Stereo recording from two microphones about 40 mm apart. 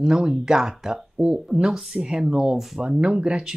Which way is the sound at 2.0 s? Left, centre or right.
Centre.